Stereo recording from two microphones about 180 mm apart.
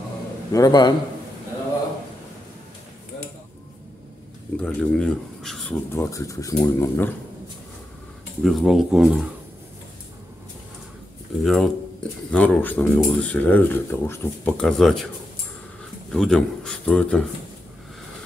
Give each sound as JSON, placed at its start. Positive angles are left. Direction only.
{"t": 0.5, "sound": "a man's voice", "side_deg": 20}
{"t": 4.6, "sound": "speech", "side_deg": 5}
{"t": 5.9, "sound": "speech", "side_deg": 15}
{"t": 8.4, "sound": "speech", "side_deg": 0}
{"t": 11.4, "sound": "speech", "side_deg": 0}
{"t": 16.1, "sound": "speech", "side_deg": 0}